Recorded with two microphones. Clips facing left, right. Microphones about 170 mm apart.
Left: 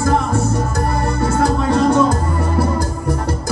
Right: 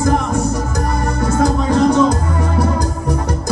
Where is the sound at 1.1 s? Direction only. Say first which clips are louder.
Right 2 dB; 15° right (ahead or behind).